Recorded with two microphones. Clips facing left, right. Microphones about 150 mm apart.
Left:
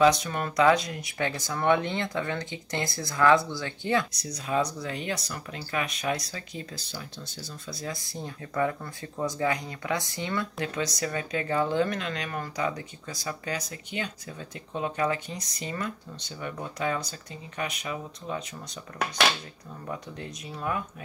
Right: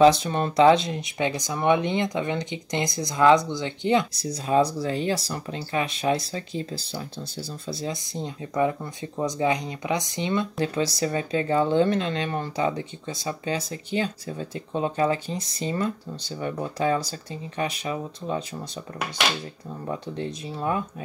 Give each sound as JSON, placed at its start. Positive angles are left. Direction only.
{"t": 0.0, "sound": "speech", "side_deg": -30}
{"t": 4.2, "sound": "speech", "side_deg": -30}
{"t": 19.9, "sound": "speech", "side_deg": -30}